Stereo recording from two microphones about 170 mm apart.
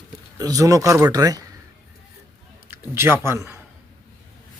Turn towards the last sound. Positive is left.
turn(degrees=-15)  # may be behind; listen again after turning